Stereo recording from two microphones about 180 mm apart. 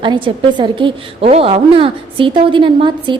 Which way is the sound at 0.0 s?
30° right (ahead or behind).